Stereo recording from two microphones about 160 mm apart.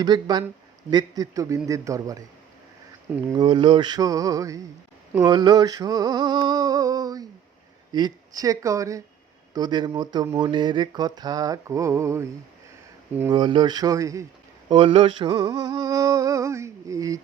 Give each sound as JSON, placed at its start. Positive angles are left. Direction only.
{"t": 0.0, "sound": "speech", "side_deg": -25}
{"t": 3.2, "sound": "speech", "side_deg": -25}
{"t": 13.3, "sound": "speech", "side_deg": -30}
{"t": 14.7, "sound": "speech", "side_deg": -30}